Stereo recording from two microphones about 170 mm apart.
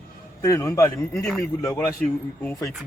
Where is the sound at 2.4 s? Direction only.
15° left (ahead or behind).